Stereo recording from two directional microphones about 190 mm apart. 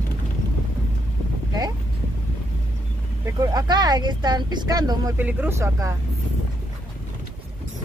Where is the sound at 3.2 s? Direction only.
20° right (ahead or behind).